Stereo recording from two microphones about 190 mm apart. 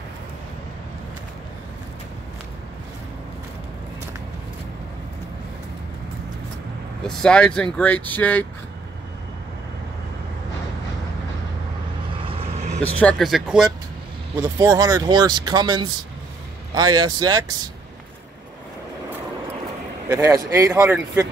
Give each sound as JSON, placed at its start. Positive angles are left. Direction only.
{"t": 7.1, "sound": "speech", "side_deg": 5}
{"t": 12.3, "sound": "vehicle", "side_deg": -30}
{"t": 13.0, "sound": "speech", "side_deg": 0}
{"t": 14.6, "sound": "speech", "side_deg": -15}
{"t": 20.1, "sound": "speech", "side_deg": -20}